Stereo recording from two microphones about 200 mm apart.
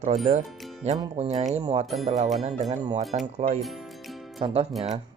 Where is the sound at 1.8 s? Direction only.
Centre (ahead or behind).